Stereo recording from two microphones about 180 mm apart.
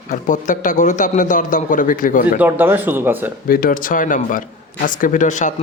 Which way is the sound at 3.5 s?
55° left (ahead or behind).